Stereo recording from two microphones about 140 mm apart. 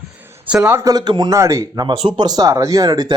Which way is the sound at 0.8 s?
25° right (ahead or behind).